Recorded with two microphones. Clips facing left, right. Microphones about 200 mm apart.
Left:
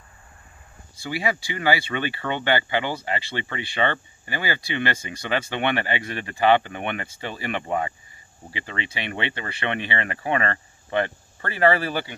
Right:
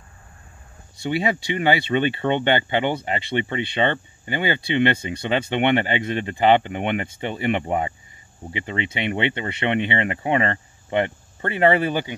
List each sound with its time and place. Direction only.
0.9 s speech: 20° right (ahead or behind)